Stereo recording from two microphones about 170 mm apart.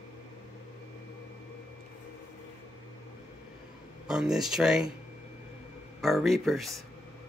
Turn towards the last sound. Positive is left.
turn(degrees=0)  # may be behind; listen again after turning